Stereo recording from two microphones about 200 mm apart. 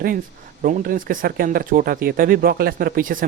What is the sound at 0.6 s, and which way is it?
Speech, 45° right (ahead or behind).